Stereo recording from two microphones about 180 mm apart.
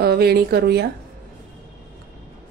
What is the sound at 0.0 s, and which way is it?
Speech, 60° right (ahead or behind).